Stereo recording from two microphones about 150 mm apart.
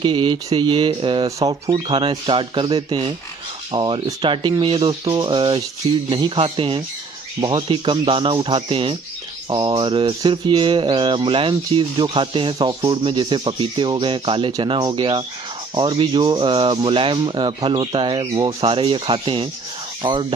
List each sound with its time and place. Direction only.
0.0 s mantra: 35° right (ahead or behind)